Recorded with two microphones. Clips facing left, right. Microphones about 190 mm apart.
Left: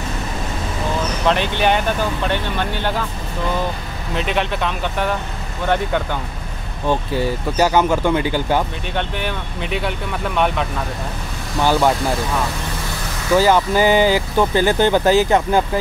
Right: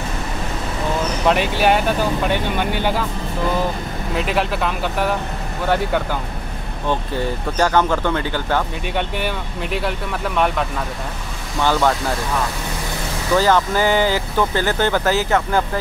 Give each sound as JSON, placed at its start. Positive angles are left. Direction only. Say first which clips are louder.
{"t": 1.2, "sound": "speech", "louder": "right 1 dB", "side_deg": -5}
{"t": 4.1, "sound": "speech", "louder": "even", "side_deg": -5}
{"t": 7.5, "sound": "speech", "louder": "left 1 dB", "side_deg": 10}
{"t": 8.9, "sound": "speech", "louder": "right 1 dB", "side_deg": -5}
{"t": 11.6, "sound": "speech", "louder": "left 2 dB", "side_deg": 10}
{"t": 13.4, "sound": "speech", "louder": "left 2 dB", "side_deg": 15}